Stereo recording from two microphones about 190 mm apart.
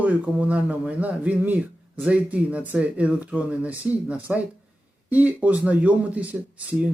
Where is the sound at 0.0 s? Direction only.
5° right (ahead or behind).